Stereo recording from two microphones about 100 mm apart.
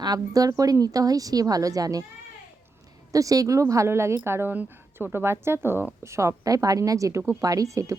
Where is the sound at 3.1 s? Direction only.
35° right (ahead or behind).